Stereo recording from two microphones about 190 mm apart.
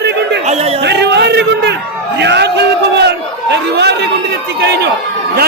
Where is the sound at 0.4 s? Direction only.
35° right (ahead or behind).